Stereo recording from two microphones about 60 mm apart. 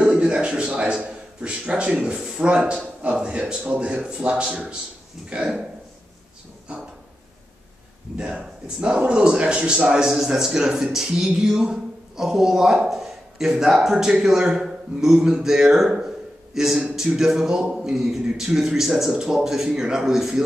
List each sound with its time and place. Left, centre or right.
0.0 s a sound: centre
3.0 s a man's voice: centre
8.2 s a man's voice: centre